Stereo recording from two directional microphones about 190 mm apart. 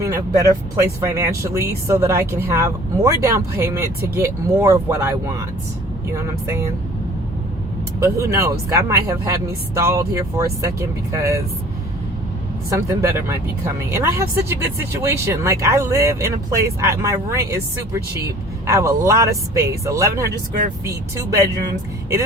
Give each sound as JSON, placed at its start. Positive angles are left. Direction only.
{"t": 0.0, "sound": "speech", "side_deg": -15}
{"t": 7.9, "sound": "speech", "side_deg": -15}
{"t": 12.7, "sound": "speech", "side_deg": -15}